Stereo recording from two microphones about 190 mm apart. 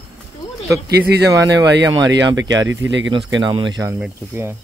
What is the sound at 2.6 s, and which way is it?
Speech, 75° right (ahead or behind).